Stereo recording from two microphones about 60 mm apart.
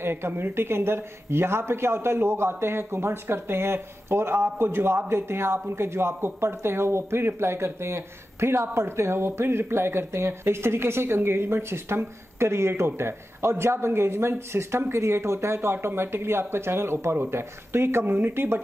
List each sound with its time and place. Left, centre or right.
0.0 s speech: right